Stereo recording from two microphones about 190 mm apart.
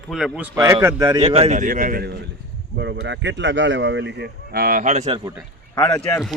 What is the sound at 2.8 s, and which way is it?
Speech, 70° right (ahead or behind).